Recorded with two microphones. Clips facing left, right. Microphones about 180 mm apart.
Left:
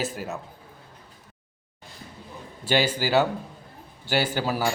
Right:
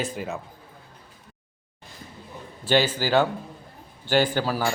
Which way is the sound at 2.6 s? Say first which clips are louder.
Right 2 dB; 10° left (ahead or behind).